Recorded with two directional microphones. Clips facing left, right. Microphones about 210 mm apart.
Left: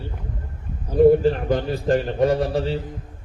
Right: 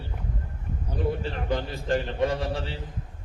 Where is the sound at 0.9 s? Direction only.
45° left (ahead or behind).